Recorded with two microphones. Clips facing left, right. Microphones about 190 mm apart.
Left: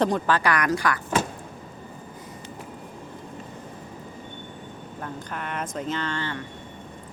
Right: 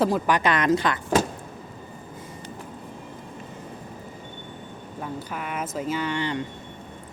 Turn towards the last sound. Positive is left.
turn(degrees=-15)  # may be behind; listen again after turning